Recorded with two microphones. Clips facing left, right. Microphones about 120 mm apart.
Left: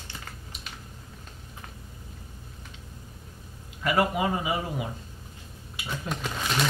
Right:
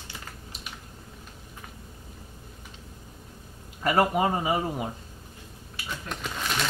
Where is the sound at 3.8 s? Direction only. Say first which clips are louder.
Right 2 dB; 40° right (ahead or behind).